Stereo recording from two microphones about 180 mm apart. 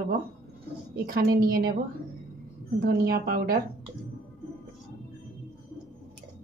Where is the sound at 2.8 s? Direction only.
55° right (ahead or behind).